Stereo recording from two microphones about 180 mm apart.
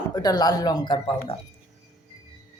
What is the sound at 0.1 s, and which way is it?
Speech, 20° left (ahead or behind).